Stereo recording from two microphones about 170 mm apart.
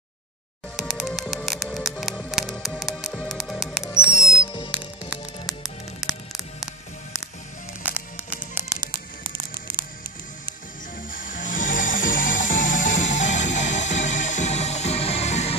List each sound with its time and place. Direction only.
0.7 s music: centre (ahead or behind)
7.8 s music: 10° right (ahead or behind)
8.9 s music: 30° right (ahead or behind)
11.1 s music: 50° left (ahead or behind)